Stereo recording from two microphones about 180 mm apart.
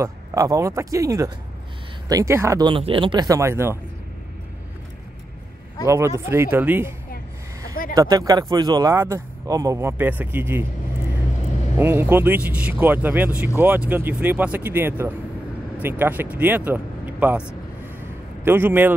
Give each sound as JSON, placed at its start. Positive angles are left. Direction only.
{"t": 0.0, "sound": "speech", "side_deg": -20}
{"t": 5.9, "sound": "speech", "side_deg": -15}
{"t": 7.9, "sound": "speech", "side_deg": -20}
{"t": 11.8, "sound": "speech", "side_deg": -10}
{"t": 18.4, "sound": "speech", "side_deg": -10}